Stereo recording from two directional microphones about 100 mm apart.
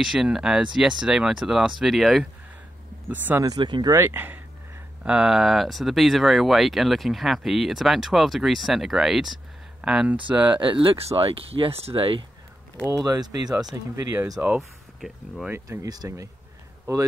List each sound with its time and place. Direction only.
0.0 s speech: 5° right (ahead or behind)
3.1 s speech: 20° right (ahead or behind)
3.4 s speech: 45° right (ahead or behind)
3.9 s speech: 25° right (ahead or behind)
5.0 s speech: 5° right (ahead or behind)
10.5 s speech: 55° right (ahead or behind)
11.0 s speech: 75° right (ahead or behind); by 12.3 s 60° right (ahead or behind)
12.8 s speech: 35° right (ahead or behind)
14.6 s speech: centre (ahead or behind)
15.5 s speech: 25° right (ahead or behind)